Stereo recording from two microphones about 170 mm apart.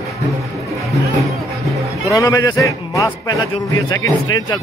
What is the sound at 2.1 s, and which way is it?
Speech, 20° left (ahead or behind).